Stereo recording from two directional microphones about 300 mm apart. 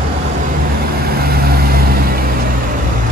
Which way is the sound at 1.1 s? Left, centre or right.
Right.